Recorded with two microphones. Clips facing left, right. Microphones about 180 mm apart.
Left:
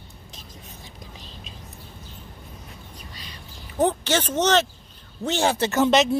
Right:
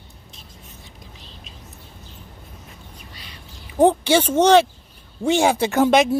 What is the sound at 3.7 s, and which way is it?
Speech, 10° right (ahead or behind).